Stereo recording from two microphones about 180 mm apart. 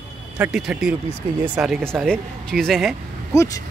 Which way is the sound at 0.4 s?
Centre (ahead or behind).